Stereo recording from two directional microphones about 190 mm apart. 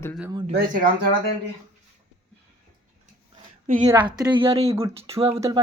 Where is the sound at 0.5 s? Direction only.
45° right (ahead or behind).